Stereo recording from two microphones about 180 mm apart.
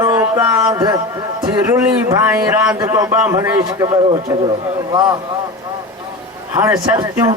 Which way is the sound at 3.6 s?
25° right (ahead or behind).